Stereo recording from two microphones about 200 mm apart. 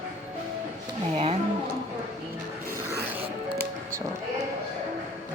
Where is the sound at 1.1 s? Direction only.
30° right (ahead or behind).